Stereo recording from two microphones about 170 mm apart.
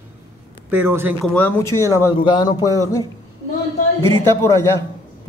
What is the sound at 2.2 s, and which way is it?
Speech, 25° left (ahead or behind).